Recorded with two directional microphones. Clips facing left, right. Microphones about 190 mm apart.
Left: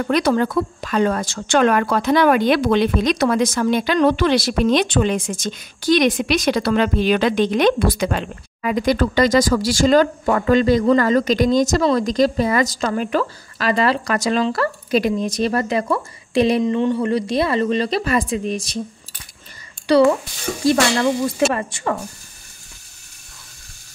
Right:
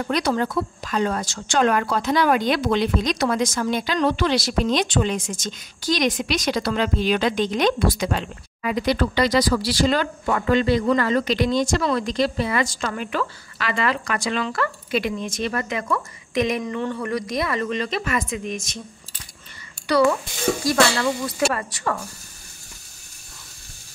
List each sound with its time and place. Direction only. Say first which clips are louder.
0.1 s a woman's voice: left 5 dB; 60° left (ahead or behind); by 18.8 s 35° left (ahead or behind)
21.5 s speech: left 3 dB; 25° left (ahead or behind)